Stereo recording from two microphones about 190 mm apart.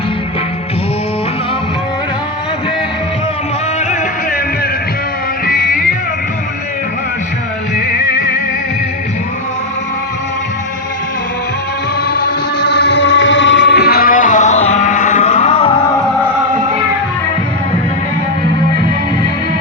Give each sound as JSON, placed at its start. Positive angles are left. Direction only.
{"t": 5.5, "sound": "music", "side_deg": 45}
{"t": 12.0, "sound": "music", "side_deg": 55}